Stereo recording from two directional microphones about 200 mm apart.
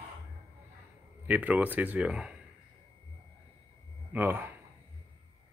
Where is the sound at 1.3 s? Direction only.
10° right (ahead or behind).